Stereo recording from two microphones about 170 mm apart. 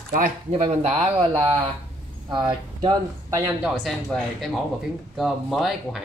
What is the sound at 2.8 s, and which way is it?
Speech, 20° right (ahead or behind).